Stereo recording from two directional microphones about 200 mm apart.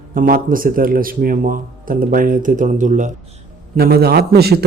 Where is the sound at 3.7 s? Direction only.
50° right (ahead or behind).